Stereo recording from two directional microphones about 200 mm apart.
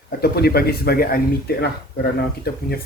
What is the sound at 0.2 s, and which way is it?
Speech, 50° left (ahead or behind).